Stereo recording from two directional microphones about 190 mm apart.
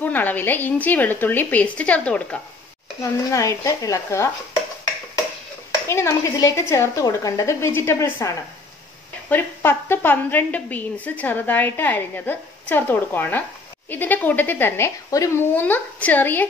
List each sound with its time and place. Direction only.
0.0 s a woman's voice: 10° left (ahead or behind)
5.9 s a woman's voice: 15° left (ahead or behind)
9.3 s a woman's voice: 10° left (ahead or behind)